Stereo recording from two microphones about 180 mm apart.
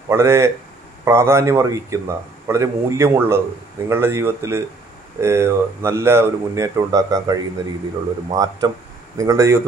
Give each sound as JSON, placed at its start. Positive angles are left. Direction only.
{"t": 0.1, "sound": "a man's voice", "side_deg": -15}